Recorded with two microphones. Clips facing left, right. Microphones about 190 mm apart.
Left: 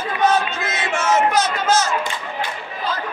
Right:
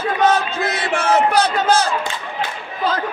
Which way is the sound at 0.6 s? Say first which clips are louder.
Right 3 dB; 35° right (ahead or behind).